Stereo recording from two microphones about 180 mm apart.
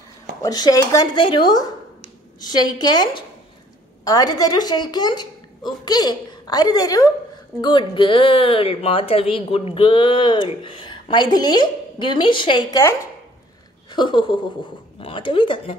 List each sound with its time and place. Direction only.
0.4 s speech: 20° left (ahead or behind)